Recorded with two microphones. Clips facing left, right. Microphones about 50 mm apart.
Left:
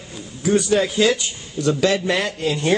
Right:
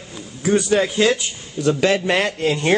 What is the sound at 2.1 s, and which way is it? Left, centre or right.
Speech, right.